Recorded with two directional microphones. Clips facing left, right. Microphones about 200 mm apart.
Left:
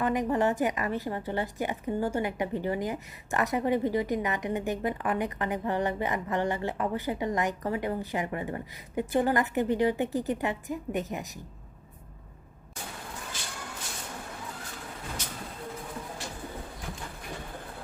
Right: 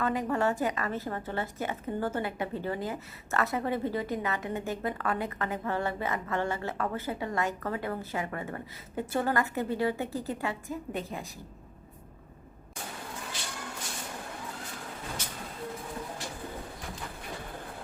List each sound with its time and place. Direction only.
0.0 s a woman's voice: 20° left (ahead or behind)